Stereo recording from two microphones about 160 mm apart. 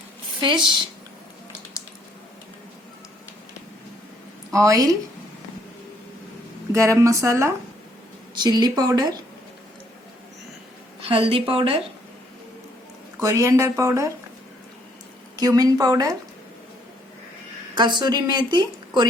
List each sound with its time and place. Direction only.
0.4 s a woman's voice: 30° right (ahead or behind)
4.5 s a woman's voice: 20° right (ahead or behind)
6.7 s a woman's voice: 20° right (ahead or behind)
11.1 s speech: 35° right (ahead or behind)
13.1 s a woman's voice: 20° right (ahead or behind)
15.4 s a woman's voice: 25° right (ahead or behind)
17.7 s a woman's voice: 25° right (ahead or behind)